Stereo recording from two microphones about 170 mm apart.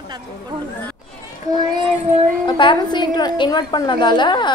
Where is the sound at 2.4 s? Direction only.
30° left (ahead or behind).